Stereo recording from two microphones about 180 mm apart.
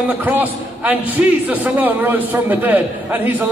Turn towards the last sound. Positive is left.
turn(degrees=-10)  # may be behind; listen again after turning